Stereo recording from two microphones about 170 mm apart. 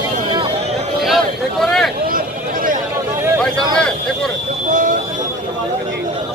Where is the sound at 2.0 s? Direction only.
55° right (ahead or behind).